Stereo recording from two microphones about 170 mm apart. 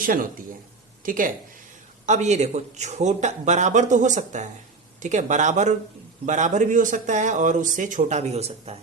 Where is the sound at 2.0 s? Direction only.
45° right (ahead or behind).